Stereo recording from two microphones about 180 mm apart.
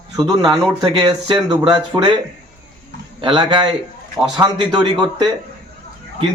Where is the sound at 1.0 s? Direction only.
25° right (ahead or behind).